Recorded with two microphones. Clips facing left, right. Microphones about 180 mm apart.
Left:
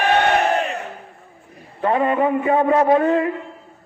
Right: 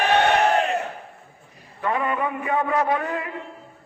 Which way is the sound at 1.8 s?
30° left (ahead or behind).